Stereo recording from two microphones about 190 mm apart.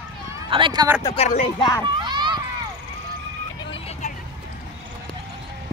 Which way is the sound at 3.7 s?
30° left (ahead or behind).